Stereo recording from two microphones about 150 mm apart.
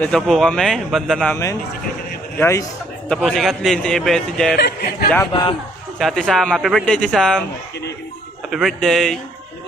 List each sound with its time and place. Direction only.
0.0 s speech: centre (ahead or behind)
1.3 s a man's voice: 20° left (ahead or behind)
3.2 s speech: centre (ahead or behind)
4.6 s a man's voice: 90° left
5.2 s a man's voice: 20° left (ahead or behind)
5.9 s speech: 5° left (ahead or behind)
8.5 s speech: centre (ahead or behind)